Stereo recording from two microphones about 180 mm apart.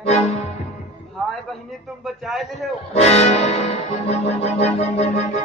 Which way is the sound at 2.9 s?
35° left (ahead or behind).